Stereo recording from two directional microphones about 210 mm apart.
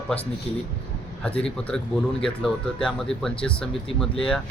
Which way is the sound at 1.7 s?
5° left (ahead or behind).